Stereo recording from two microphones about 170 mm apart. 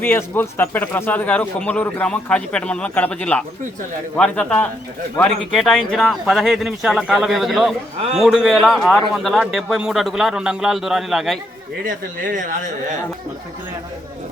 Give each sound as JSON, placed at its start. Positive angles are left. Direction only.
{"t": 0.0, "sound": "a man's voice", "side_deg": 15}
{"t": 11.9, "sound": "speech", "side_deg": -50}